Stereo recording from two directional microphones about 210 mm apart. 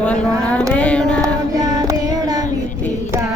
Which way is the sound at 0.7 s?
5° left (ahead or behind).